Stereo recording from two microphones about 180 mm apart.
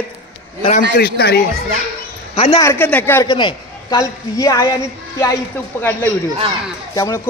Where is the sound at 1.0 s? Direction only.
65° left (ahead or behind).